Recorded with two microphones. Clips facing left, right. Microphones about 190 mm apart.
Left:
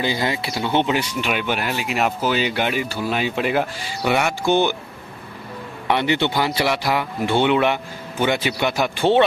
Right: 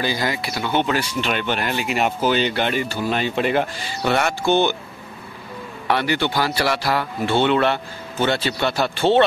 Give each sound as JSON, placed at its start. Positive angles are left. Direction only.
{"t": 0.0, "sound": "speech", "side_deg": 25}
{"t": 1.3, "sound": "speech", "side_deg": 10}
{"t": 5.9, "sound": "speech", "side_deg": 20}